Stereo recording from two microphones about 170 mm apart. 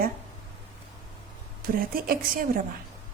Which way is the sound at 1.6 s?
60° right (ahead or behind).